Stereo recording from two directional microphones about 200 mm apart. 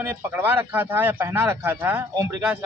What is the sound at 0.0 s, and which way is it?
Speech, 10° right (ahead or behind).